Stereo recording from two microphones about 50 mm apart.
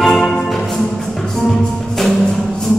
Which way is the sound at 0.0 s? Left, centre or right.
Centre.